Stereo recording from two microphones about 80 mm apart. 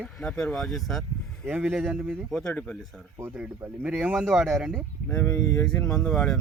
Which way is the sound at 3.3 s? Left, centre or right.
Centre.